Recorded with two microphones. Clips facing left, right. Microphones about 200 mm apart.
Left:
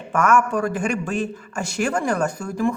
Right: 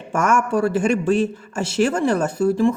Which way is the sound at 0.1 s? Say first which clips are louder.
Even; 40° right (ahead or behind).